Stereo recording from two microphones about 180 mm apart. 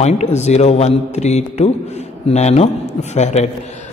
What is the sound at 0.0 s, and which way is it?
A man's voice, 40° left (ahead or behind).